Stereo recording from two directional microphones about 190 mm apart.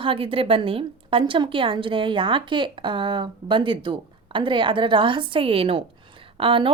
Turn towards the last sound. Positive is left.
turn(degrees=-30)  # may be behind; listen again after turning